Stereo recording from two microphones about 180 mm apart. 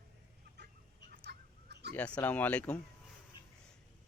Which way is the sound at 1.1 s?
60° right (ahead or behind).